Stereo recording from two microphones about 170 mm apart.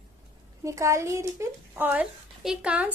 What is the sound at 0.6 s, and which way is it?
A woman's voice, 15° right (ahead or behind).